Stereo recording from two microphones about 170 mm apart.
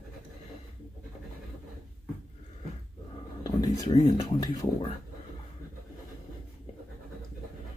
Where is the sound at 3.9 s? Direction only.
30° left (ahead or behind).